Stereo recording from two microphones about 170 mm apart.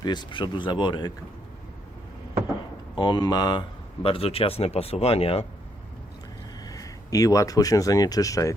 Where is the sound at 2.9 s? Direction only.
25° left (ahead or behind).